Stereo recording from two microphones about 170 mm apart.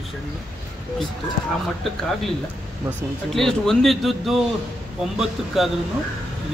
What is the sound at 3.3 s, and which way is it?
Speech, centre (ahead or behind).